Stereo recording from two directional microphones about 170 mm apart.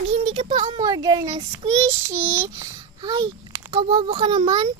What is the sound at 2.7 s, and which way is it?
A child's voice, 25° right (ahead or behind).